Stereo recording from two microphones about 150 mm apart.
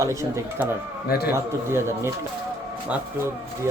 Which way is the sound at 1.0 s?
90° left.